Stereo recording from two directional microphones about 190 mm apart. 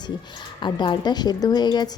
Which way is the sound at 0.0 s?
25° left (ahead or behind).